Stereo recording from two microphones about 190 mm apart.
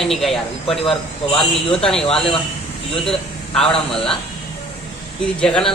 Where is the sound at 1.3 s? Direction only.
30° left (ahead or behind).